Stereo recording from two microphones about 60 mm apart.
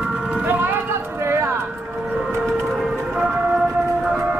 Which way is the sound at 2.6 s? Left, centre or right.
Centre.